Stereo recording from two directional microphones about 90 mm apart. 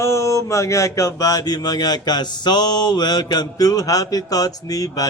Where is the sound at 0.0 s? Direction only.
35° left (ahead or behind).